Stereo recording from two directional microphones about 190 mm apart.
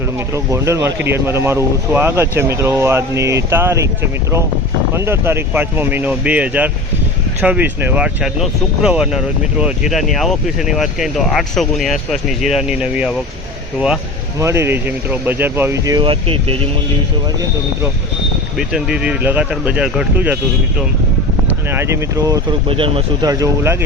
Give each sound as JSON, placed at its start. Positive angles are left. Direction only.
{"t": 0.3, "sound": "speech", "side_deg": -15}
{"t": 4.9, "sound": "speech", "side_deg": -15}
{"t": 14.3, "sound": "speech", "side_deg": -15}
{"t": 18.5, "sound": "speech", "side_deg": -5}
{"t": 21.7, "sound": "speech", "side_deg": -15}